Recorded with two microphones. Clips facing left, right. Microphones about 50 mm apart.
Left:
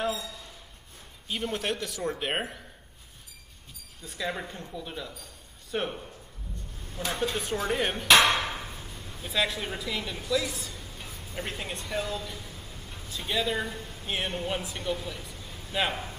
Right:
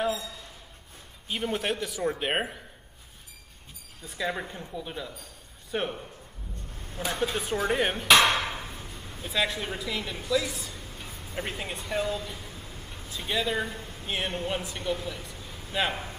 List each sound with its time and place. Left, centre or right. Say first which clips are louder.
1.3 s speech: right 1 dB; centre
4.0 s speech: right 2 dB; centre
8.4 s a sound: even; right
8.6 s a man's voice: right 1 dB; centre